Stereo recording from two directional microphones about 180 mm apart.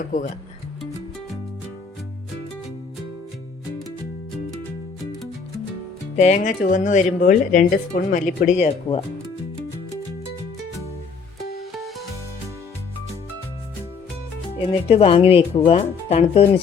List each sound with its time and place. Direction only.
0.1 s speech: 45° left (ahead or behind)
6.1 s speech: 40° left (ahead or behind)
14.7 s speech: 30° left (ahead or behind)